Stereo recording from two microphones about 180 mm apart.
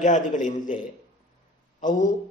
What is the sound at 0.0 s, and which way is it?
Speech, 45° left (ahead or behind).